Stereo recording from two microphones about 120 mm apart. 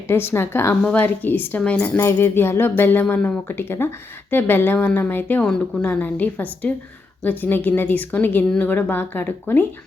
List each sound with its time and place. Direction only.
0.1 s a woman's voice: 20° left (ahead or behind)
2.0 s a woman's voice: 20° left (ahead or behind)